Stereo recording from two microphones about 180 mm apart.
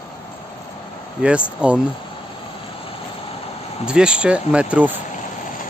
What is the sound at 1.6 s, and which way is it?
Speech, 5° right (ahead or behind).